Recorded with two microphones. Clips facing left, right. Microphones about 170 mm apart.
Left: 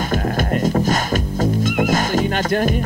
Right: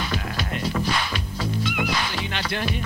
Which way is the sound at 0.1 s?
45° left (ahead or behind).